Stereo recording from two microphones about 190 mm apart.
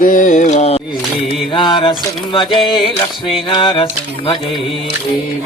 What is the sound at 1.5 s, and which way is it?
Music, 25° left (ahead or behind).